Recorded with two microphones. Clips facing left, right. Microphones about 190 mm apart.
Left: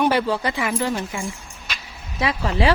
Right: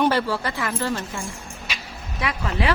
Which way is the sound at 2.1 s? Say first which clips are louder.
Left 4 dB; 30° left (ahead or behind).